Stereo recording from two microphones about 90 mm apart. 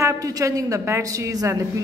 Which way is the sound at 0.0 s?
40° right (ahead or behind).